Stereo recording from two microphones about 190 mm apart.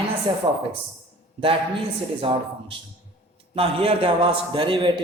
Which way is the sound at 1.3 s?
30° right (ahead or behind).